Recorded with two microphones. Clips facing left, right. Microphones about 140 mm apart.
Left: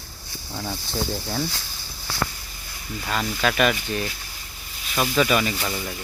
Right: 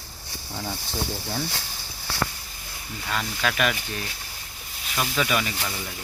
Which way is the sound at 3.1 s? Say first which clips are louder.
Left 3 dB; 15° left (ahead or behind).